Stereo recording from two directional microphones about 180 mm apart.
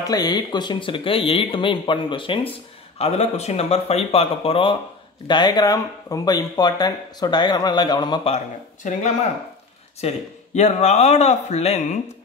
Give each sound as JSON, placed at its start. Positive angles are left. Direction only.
{"t": 0.0, "sound": "speech", "side_deg": 20}
{"t": 9.9, "sound": "speech", "side_deg": 40}